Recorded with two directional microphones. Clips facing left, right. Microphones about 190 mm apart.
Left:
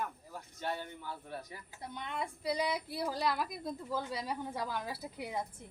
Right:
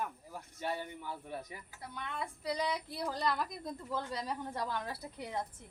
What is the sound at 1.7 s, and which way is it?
Speech, 20° left (ahead or behind).